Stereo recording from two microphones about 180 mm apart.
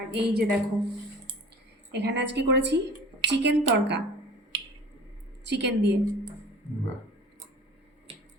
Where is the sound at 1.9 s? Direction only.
75° right (ahead or behind).